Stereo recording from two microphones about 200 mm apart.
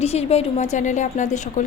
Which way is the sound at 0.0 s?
30° left (ahead or behind).